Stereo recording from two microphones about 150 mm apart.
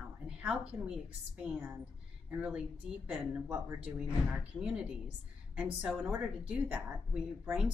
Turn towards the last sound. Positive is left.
turn(degrees=-5)  # may be behind; listen again after turning